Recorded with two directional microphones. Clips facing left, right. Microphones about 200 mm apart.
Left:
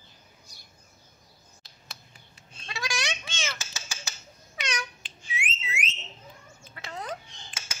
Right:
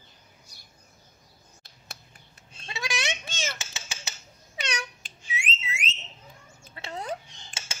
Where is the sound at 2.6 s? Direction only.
20° right (ahead or behind).